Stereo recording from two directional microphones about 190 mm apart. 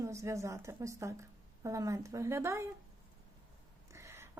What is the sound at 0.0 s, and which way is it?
A woman's voice, 15° right (ahead or behind).